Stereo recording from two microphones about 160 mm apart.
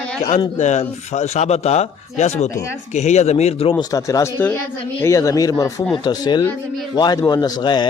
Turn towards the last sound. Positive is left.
turn(degrees=30)  # may be behind; listen again after turning